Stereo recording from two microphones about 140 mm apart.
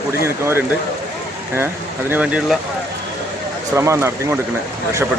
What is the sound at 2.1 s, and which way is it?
Speech, 10° right (ahead or behind).